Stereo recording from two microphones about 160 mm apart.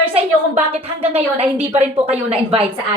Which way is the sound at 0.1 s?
40° right (ahead or behind).